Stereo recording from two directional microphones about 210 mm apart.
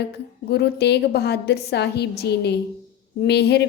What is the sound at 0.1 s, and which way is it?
A woman's voice, 50° left (ahead or behind).